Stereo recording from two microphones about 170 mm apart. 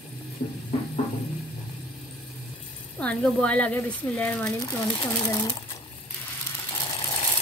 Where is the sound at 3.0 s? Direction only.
5° left (ahead or behind).